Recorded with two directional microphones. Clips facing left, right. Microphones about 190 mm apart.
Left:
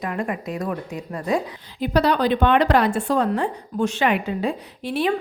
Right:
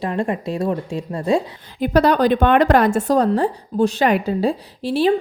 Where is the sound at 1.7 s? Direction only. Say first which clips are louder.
Right 4 dB; 50° right (ahead or behind).